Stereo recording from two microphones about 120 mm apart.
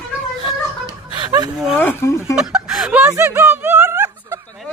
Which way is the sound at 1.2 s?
35° right (ahead or behind).